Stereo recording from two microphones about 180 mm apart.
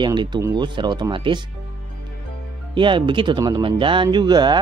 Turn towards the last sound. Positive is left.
turn(degrees=-25)  # may be behind; listen again after turning